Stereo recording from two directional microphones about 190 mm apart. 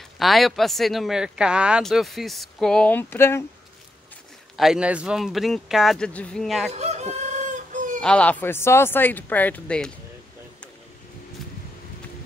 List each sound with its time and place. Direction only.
0.2 s speech: centre (ahead or behind)
4.6 s speech: 5° right (ahead or behind)
6.7 s chicken: 35° right (ahead or behind)
8.0 s speech: 5° left (ahead or behind)